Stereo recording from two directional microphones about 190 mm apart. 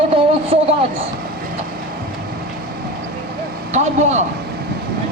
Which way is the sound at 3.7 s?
35° right (ahead or behind).